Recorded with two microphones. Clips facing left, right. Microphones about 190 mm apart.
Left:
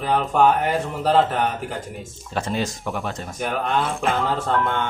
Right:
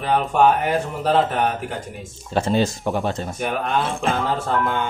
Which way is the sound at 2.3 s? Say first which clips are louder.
Right 5 dB; 30° right (ahead or behind).